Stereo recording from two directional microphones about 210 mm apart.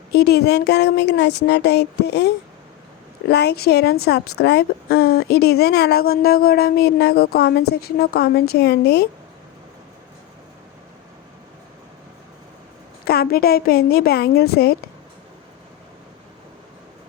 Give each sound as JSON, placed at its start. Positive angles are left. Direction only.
{"t": 0.1, "sound": "a woman's voice", "side_deg": 50}
{"t": 13.1, "sound": "a woman's voice", "side_deg": 45}